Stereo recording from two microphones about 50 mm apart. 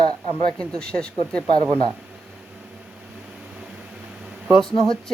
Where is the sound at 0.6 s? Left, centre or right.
Centre.